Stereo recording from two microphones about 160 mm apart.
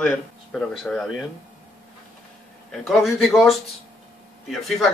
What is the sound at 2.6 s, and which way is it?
Speech, centre (ahead or behind).